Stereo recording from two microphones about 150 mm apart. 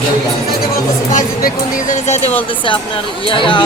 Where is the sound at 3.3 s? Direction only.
35° left (ahead or behind).